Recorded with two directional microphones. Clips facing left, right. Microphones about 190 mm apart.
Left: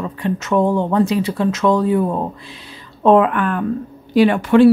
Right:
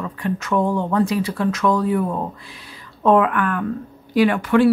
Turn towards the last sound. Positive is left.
turn(degrees=25)  # may be behind; listen again after turning